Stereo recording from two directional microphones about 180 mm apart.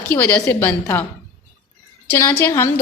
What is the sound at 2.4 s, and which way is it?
Speech, 15° left (ahead or behind).